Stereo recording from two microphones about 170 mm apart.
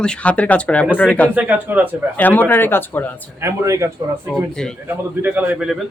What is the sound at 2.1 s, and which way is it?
Speech, 10° left (ahead or behind).